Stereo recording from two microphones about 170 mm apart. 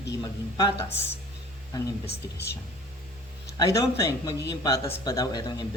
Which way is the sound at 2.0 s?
70° left (ahead or behind).